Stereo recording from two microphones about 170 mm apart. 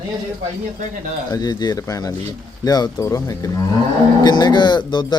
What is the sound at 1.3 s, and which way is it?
Speech, 25° left (ahead or behind).